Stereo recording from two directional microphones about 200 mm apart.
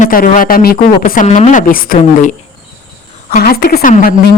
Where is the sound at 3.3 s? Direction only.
50° left (ahead or behind).